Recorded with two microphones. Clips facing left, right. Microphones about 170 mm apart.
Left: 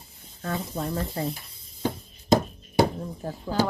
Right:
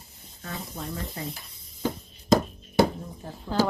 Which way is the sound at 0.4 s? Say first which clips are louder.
Left 6 dB; 55° left (ahead or behind).